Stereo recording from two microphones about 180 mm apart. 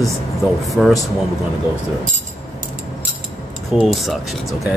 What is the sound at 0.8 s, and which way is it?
Speech, centre (ahead or behind).